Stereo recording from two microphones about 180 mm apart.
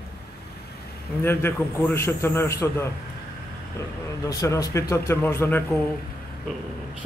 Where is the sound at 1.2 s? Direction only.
15° left (ahead or behind).